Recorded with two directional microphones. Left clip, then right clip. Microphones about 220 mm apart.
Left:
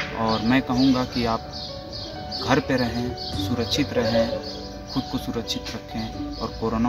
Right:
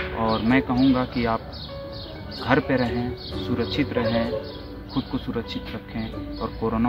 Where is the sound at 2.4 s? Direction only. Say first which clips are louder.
Right 1 dB; 5° left (ahead or behind).